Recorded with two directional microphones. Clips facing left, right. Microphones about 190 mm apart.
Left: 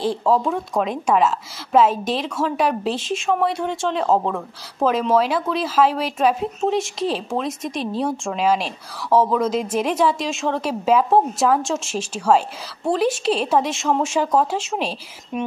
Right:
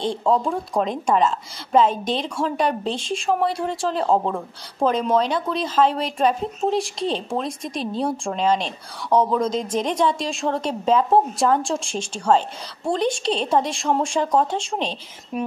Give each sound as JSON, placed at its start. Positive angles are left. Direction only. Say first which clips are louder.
{"t": 0.0, "sound": "a woman's voice", "louder": "left 2 dB", "side_deg": 5}